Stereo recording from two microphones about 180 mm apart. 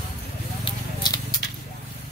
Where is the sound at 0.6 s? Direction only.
25° left (ahead or behind).